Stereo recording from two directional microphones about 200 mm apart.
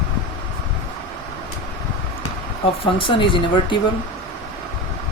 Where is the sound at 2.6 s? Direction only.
25° left (ahead or behind).